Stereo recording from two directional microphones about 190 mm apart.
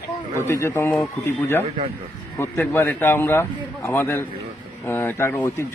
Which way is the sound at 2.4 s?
10° left (ahead or behind).